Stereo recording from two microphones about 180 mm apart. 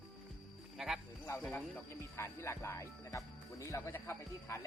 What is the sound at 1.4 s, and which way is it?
Speech, 10° left (ahead or behind).